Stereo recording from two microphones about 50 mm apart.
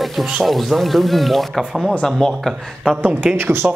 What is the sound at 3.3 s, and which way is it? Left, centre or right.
Speech, right.